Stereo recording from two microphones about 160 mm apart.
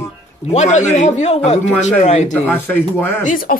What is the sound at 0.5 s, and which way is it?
Speech, 45° left (ahead or behind).